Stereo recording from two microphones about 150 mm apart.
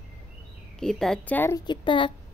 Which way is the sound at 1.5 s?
30° left (ahead or behind).